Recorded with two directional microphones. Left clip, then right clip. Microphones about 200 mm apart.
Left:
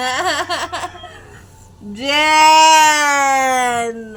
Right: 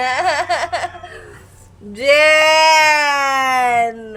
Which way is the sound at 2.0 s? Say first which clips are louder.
Right 1 dB; 10° right (ahead or behind).